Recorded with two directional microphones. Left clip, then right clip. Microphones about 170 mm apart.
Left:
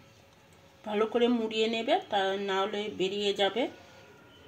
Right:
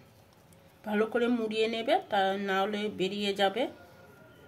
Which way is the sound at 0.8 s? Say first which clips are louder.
Left 2 dB; 5° left (ahead or behind).